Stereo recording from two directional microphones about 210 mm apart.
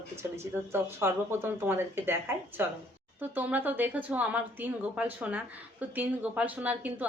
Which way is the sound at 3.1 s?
10° right (ahead or behind).